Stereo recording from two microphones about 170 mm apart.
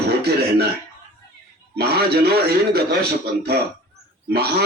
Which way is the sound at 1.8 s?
70° right (ahead or behind).